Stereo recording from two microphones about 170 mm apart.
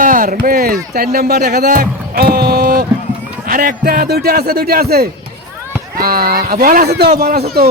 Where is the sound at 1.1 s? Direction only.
70° right (ahead or behind).